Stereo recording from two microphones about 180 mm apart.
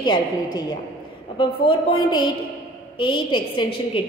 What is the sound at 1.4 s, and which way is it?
A woman's voice, 25° left (ahead or behind).